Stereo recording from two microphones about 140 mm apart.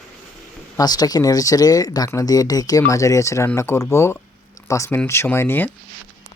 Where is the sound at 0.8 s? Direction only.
25° left (ahead or behind).